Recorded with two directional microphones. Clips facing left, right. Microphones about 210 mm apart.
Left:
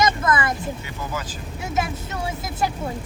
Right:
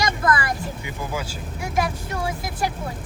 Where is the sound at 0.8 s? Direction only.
10° right (ahead or behind).